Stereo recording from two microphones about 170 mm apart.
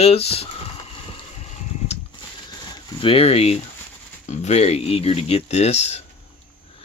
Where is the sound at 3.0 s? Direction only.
35° left (ahead or behind).